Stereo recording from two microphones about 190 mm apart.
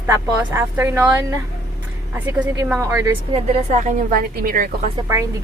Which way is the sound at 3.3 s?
40° right (ahead or behind).